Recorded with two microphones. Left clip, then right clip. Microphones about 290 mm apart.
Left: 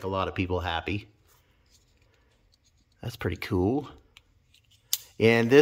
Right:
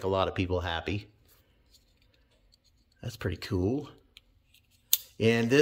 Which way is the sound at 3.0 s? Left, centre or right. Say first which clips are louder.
Left 4 dB; centre.